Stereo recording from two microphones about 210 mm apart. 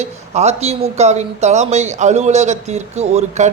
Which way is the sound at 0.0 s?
30° right (ahead or behind).